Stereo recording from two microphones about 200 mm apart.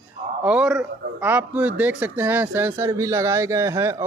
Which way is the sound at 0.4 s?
5° right (ahead or behind).